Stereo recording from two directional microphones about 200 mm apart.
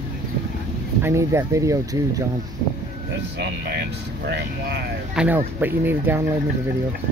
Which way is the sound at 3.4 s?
55° right (ahead or behind).